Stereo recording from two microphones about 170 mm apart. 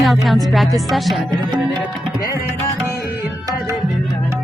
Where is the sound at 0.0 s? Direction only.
Centre (ahead or behind).